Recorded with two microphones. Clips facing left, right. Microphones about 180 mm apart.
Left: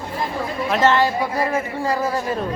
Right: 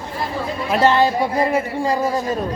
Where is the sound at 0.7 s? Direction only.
15° right (ahead or behind).